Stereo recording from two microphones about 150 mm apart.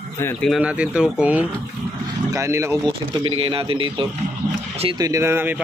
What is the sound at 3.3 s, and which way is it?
Speech, 40° right (ahead or behind).